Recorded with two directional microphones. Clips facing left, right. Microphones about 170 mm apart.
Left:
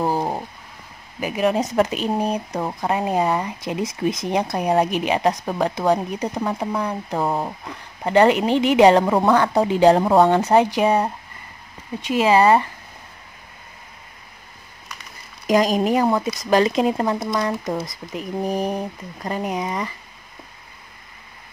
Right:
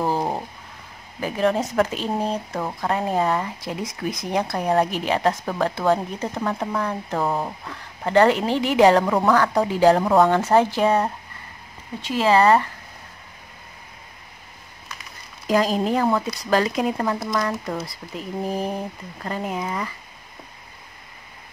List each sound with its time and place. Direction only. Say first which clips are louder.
0.0 s a sound: left 1 dB; 15° left (ahead or behind)
1.2 s speech: left 1 dB; 15° left (ahead or behind)
15.4 s speech: left 3 dB; 15° left (ahead or behind)